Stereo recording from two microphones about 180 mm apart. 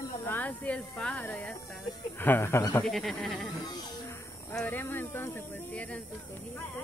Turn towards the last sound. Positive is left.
turn(degrees=5)  # may be behind; listen again after turning